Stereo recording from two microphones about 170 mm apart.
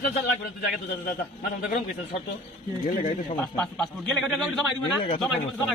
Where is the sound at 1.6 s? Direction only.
50° left (ahead or behind).